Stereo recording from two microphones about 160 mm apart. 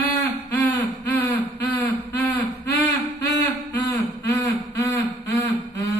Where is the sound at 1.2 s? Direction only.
15° left (ahead or behind).